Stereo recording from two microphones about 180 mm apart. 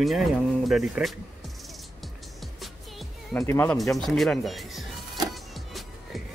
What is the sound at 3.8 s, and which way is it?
Speech, centre (ahead or behind).